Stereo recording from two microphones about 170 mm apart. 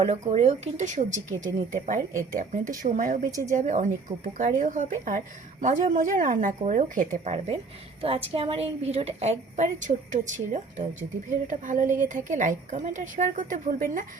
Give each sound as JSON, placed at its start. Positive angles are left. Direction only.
{"t": 0.0, "sound": "a woman's voice", "side_deg": -40}